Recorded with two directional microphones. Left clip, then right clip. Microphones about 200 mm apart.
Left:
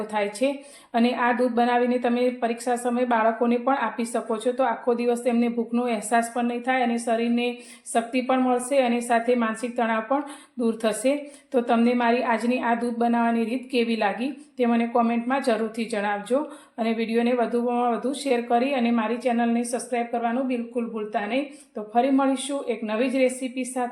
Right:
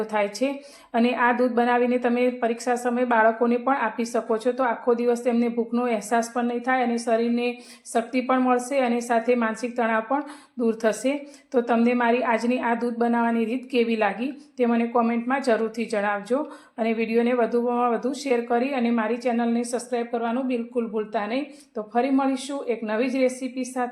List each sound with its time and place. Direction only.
0.1 s a woman's voice: 15° right (ahead or behind)